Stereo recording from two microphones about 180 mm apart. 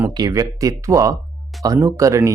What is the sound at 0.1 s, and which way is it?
Speech, 20° right (ahead or behind).